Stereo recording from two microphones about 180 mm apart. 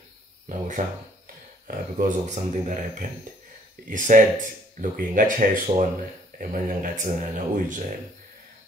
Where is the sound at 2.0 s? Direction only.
45° right (ahead or behind).